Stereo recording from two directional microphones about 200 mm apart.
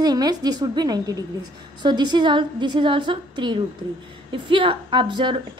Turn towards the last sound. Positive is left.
turn(degrees=-25)  # may be behind; listen again after turning